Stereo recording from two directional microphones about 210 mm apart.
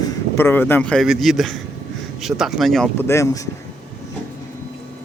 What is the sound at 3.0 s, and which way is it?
Speech, 15° left (ahead or behind).